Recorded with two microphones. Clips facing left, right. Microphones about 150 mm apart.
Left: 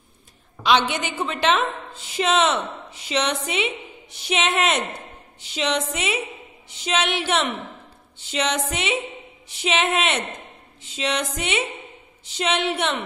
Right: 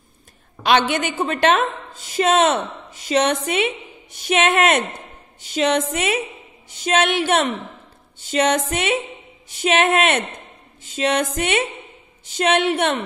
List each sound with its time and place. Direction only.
0.7 s a woman's voice: 55° right (ahead or behind)